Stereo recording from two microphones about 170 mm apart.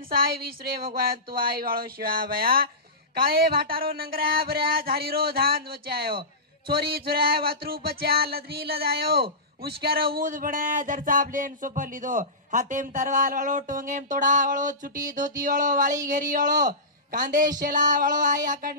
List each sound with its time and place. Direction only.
0.1 s a sound: 60° right (ahead or behind)
6.7 s music: 65° right (ahead or behind); by 16.0 s 50° right (ahead or behind)
16.1 s a woman's voice: 50° right (ahead or behind)
17.6 s music: 50° right (ahead or behind)